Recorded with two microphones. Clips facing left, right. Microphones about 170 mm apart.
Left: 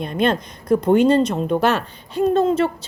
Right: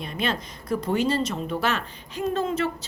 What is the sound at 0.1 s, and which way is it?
A woman's voice, 55° left (ahead or behind).